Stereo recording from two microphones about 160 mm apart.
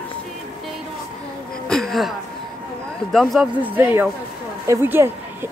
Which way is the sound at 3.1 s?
Centre (ahead or behind).